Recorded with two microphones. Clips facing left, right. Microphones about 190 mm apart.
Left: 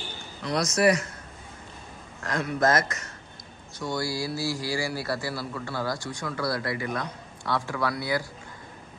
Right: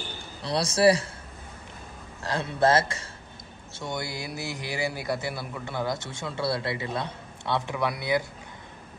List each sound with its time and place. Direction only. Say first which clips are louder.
0.4 s a man's voice: right 1 dB; 30° right (ahead or behind)
2.2 s a man's voice: right 1 dB; 30° right (ahead or behind)